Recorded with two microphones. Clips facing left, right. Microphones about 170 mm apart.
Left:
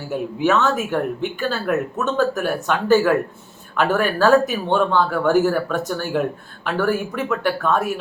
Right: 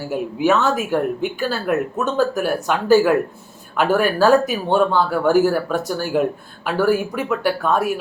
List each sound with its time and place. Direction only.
0.3 s speech: 10° right (ahead or behind)